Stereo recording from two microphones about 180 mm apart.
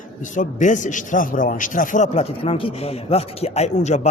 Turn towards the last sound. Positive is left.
turn(degrees=40)  # may be behind; listen again after turning